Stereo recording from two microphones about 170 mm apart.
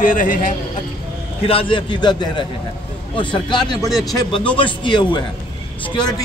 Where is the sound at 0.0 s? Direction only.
50° left (ahead or behind).